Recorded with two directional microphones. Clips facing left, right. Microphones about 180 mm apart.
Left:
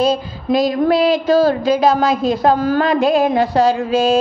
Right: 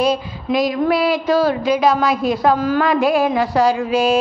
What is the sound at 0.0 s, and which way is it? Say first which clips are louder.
A woman's voice: left 1 dB; 30° left (ahead or behind).